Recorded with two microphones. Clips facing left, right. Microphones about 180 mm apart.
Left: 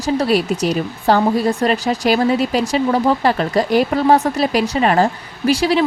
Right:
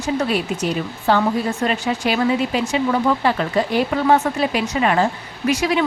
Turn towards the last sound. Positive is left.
turn(degrees=30)  # may be behind; listen again after turning